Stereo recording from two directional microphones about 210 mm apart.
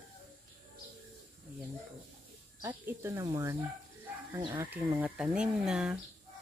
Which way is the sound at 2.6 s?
10° right (ahead or behind).